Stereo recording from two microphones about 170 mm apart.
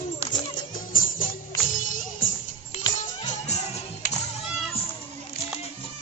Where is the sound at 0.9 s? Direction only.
50° left (ahead or behind).